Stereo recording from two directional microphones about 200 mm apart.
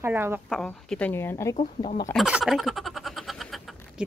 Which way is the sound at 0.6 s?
5° left (ahead or behind).